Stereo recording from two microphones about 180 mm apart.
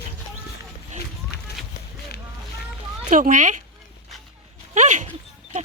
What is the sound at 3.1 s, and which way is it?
Speech, 45° right (ahead or behind).